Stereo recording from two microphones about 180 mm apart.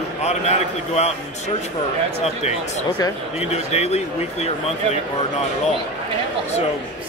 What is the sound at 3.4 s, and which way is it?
Speech, 35° left (ahead or behind).